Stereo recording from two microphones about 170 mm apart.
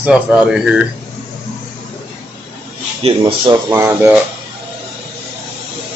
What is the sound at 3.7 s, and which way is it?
Speech, 15° right (ahead or behind).